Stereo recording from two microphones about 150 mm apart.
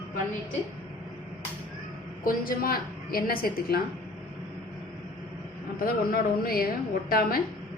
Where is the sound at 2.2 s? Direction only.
75° left (ahead or behind).